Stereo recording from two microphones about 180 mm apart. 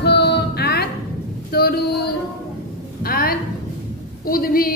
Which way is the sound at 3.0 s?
55° left (ahead or behind).